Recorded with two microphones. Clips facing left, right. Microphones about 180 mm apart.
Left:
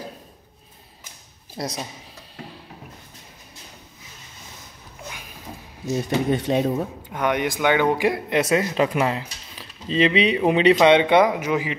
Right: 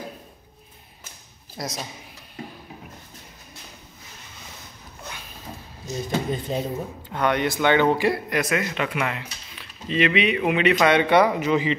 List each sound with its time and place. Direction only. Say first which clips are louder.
1.6 s speech: left 3 dB; 30° left (ahead or behind)
6.0 s speech: left 4 dB; 75° left (ahead or behind)
7.1 s speech: right 1 dB; 15° left (ahead or behind)
8.4 s speech: left 5 dB; 30° left (ahead or behind)
10.8 s speech: even; 20° left (ahead or behind)